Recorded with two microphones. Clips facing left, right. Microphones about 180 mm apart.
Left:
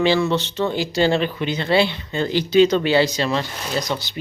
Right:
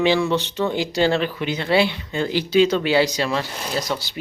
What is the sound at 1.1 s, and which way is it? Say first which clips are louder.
Speech: left 1 dB; centre (ahead or behind).